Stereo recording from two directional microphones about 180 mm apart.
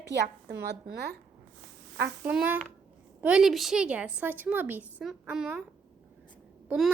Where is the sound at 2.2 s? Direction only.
10° right (ahead or behind).